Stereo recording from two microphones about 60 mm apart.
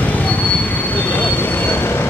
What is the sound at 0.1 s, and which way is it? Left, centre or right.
Train wheels squealing, left.